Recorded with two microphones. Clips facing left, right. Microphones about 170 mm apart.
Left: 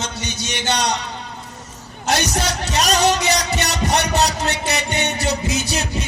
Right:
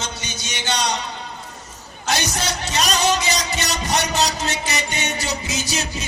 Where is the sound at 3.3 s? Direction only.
65° left (ahead or behind).